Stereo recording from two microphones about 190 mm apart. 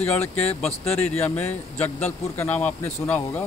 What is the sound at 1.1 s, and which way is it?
Speech, 10° left (ahead or behind).